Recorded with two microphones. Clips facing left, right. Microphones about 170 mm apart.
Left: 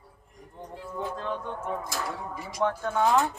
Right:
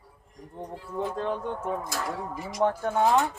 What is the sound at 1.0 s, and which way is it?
Speech, 35° right (ahead or behind).